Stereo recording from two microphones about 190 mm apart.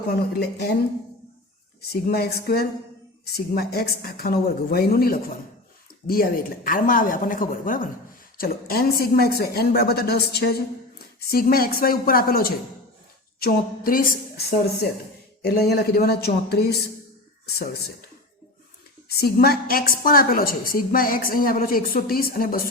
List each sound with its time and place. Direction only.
0.1 s speech: 55° left (ahead or behind)
1.9 s a woman's voice: 55° left (ahead or behind)
19.0 s a woman's voice: 55° left (ahead or behind)